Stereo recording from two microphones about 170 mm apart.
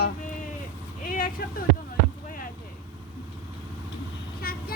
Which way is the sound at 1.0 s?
55° left (ahead or behind).